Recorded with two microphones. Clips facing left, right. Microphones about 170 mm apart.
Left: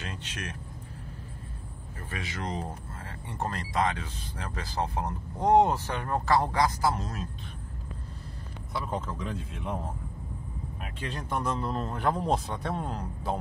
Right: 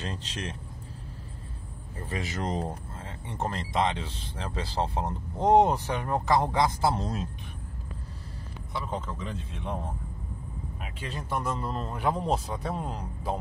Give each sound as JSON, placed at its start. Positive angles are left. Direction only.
{"t": 0.0, "sound": "speech", "side_deg": -35}
{"t": 2.0, "sound": "speech", "side_deg": -35}
{"t": 3.0, "sound": "speech", "side_deg": -20}
{"t": 8.7, "sound": "speech", "side_deg": 0}
{"t": 10.8, "sound": "speech", "side_deg": 0}